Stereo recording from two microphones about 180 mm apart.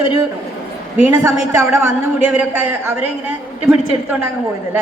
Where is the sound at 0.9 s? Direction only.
10° right (ahead or behind).